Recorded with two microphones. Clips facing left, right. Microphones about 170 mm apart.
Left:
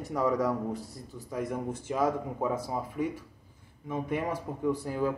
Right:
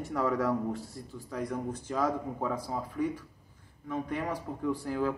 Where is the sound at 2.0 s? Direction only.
20° left (ahead or behind).